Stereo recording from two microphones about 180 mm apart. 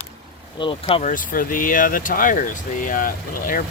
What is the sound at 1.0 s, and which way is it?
Speech, 50° left (ahead or behind).